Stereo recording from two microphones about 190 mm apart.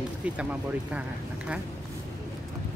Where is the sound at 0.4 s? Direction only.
5° right (ahead or behind).